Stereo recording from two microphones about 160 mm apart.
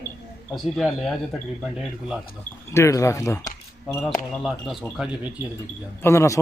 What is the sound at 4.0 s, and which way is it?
Speech, centre (ahead or behind).